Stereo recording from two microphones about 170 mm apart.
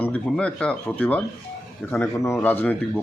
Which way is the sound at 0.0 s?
5° left (ahead or behind).